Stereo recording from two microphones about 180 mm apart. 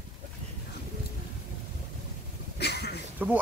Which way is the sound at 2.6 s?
65° left (ahead or behind).